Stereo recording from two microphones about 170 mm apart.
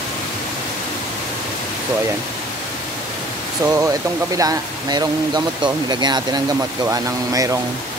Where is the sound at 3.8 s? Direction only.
20° right (ahead or behind).